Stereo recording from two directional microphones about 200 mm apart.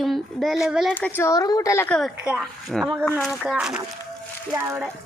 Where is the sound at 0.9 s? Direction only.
10° left (ahead or behind).